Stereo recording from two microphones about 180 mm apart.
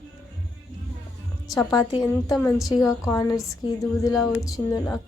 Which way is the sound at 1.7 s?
25° left (ahead or behind).